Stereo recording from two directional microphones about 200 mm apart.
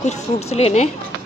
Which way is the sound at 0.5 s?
30° left (ahead or behind).